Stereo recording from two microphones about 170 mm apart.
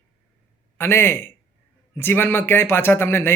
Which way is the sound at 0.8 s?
15° left (ahead or behind).